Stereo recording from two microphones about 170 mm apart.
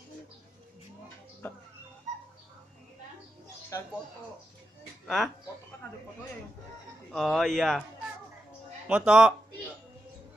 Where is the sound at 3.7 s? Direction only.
20° left (ahead or behind).